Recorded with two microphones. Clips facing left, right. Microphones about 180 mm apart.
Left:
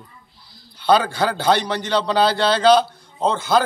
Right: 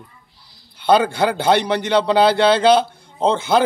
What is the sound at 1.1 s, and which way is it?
Speech, 20° right (ahead or behind).